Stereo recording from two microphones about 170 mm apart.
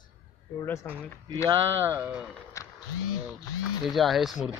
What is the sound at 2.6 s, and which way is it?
Music, 20° left (ahead or behind).